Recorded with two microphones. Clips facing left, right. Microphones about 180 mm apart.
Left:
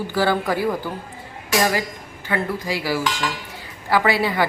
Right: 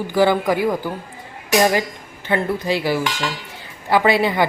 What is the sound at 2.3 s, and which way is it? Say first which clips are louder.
A woman's voice: right 4 dB; 25° right (ahead or behind).